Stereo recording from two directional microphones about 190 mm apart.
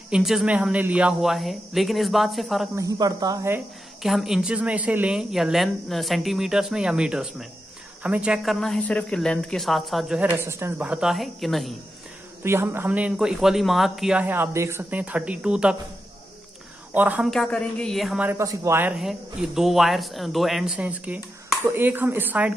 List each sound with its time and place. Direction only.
0.1 s speech: centre (ahead or behind)
2.7 s speech: 20° right (ahead or behind)
4.0 s speech: centre (ahead or behind)
12.4 s speech: 10° right (ahead or behind)
16.9 s speech: 10° right (ahead or behind)
17.3 s speech: 5° left (ahead or behind)
18.4 s speech: 15° right (ahead or behind)